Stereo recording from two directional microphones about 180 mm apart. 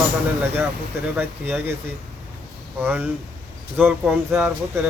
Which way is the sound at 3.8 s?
10° right (ahead or behind).